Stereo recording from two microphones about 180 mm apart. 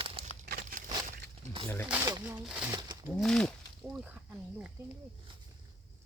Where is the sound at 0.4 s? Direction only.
50° right (ahead or behind).